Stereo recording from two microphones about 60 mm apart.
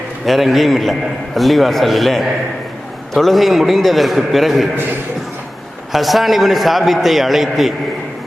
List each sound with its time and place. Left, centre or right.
0.3 s a man's voice: centre
5.9 s a man's voice: centre